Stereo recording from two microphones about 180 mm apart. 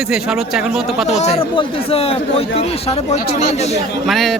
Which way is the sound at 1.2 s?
35° left (ahead or behind).